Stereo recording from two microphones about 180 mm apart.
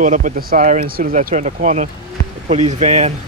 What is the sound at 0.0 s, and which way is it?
Speech, 45° right (ahead or behind).